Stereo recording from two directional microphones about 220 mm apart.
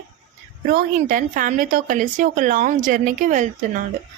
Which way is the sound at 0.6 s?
40° right (ahead or behind).